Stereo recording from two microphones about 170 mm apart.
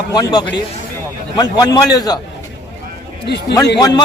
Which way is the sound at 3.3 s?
75° left (ahead or behind).